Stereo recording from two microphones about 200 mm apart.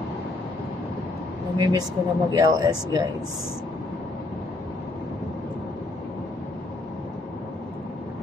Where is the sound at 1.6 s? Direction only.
20° right (ahead or behind).